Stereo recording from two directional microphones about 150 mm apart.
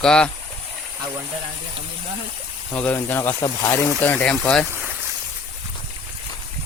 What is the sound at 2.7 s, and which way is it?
Speech, 10° left (ahead or behind).